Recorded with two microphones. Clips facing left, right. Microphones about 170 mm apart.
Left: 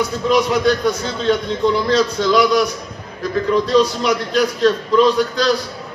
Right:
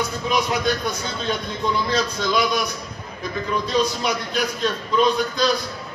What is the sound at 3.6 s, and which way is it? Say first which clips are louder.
A man's voice: left 6 dB; 80° left.